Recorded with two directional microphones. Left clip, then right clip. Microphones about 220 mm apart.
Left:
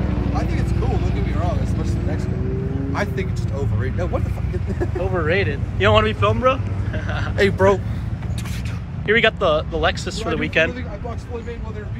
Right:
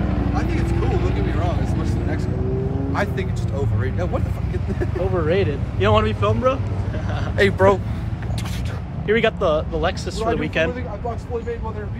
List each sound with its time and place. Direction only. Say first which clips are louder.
0.3 s vehicle: left 1 dB; 25° left (ahead or behind)
2.9 s speech: even; centre (ahead or behind)
9.0 s speech: left 2 dB; 5° right (ahead or behind)